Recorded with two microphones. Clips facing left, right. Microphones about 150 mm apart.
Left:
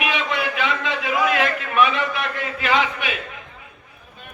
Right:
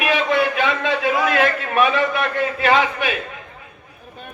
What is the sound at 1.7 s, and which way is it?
A man's voice, 40° right (ahead or behind).